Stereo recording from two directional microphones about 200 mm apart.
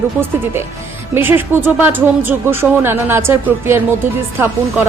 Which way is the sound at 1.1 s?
10° right (ahead or behind).